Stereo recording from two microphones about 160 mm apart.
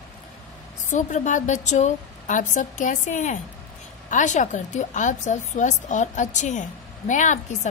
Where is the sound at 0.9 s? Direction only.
50° left (ahead or behind).